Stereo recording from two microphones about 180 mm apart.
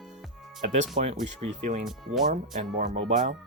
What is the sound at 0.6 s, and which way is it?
Speech, 40° right (ahead or behind).